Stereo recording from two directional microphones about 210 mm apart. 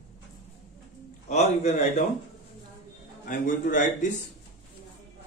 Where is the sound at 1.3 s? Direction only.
35° left (ahead or behind).